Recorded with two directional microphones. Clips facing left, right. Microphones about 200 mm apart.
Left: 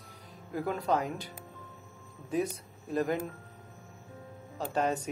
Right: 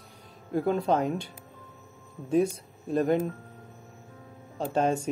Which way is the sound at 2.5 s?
25° right (ahead or behind).